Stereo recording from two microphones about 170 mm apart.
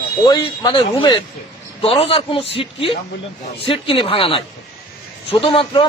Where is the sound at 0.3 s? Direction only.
25° left (ahead or behind).